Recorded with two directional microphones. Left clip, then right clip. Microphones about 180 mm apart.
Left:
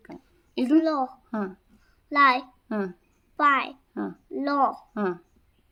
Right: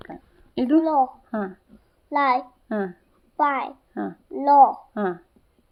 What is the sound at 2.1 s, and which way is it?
Speech, 30° left (ahead or behind).